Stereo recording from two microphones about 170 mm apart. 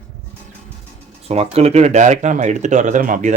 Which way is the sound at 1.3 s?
40° right (ahead or behind).